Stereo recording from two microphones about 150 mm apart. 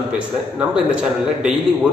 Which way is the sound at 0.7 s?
5° right (ahead or behind).